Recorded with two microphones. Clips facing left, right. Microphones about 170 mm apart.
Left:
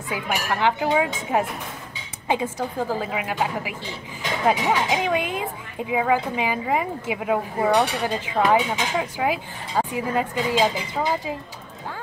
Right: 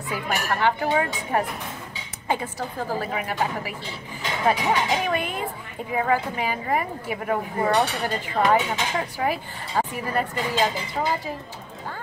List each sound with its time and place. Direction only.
0.1 s a woman's voice: 15° left (ahead or behind)